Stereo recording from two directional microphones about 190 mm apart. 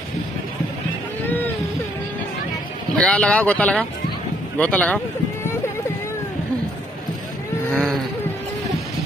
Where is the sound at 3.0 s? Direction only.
5° left (ahead or behind).